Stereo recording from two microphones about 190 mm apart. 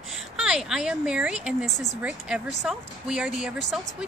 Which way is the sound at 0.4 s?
5° right (ahead or behind).